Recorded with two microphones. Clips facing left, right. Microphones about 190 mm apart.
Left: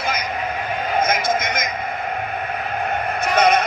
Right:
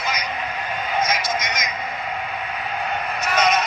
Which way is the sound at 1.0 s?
55° left (ahead or behind).